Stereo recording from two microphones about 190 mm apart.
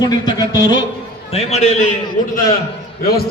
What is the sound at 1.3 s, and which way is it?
Speech, 35° left (ahead or behind).